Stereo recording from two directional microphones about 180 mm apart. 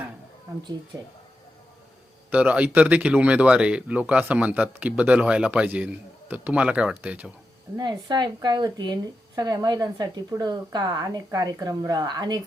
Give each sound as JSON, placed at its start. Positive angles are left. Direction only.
{"t": 2.3, "sound": "speech", "side_deg": -5}
{"t": 7.8, "sound": "speech", "side_deg": -25}